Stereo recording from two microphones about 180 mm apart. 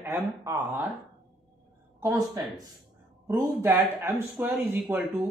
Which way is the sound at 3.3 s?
20° right (ahead or behind).